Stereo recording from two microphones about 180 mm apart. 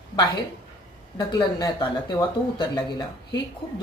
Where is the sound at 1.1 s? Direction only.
20° left (ahead or behind).